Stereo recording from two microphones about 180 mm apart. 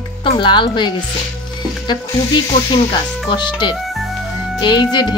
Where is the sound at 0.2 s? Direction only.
25° left (ahead or behind).